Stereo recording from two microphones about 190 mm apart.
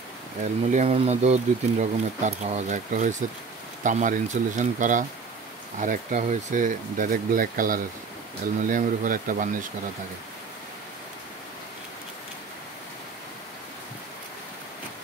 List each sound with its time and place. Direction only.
0.7 s speech: 35° right (ahead or behind)